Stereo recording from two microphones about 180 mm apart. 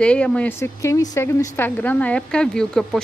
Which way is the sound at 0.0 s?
5° left (ahead or behind).